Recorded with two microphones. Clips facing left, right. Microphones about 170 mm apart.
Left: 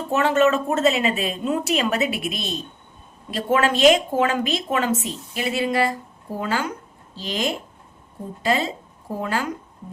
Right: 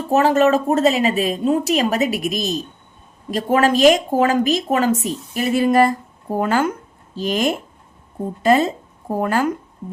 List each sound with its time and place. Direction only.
0.1 s a woman's voice: 35° right (ahead or behind)